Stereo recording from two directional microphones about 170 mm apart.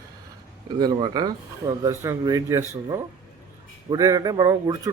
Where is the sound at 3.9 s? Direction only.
20° right (ahead or behind).